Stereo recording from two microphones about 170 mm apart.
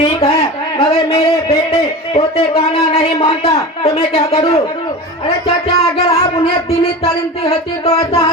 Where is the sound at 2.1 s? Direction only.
35° left (ahead or behind).